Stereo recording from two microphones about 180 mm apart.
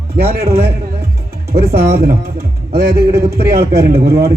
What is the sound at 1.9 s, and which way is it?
Speech, 55° right (ahead or behind).